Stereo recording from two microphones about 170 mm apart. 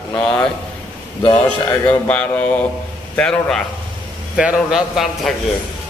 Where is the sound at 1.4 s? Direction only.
10° left (ahead or behind).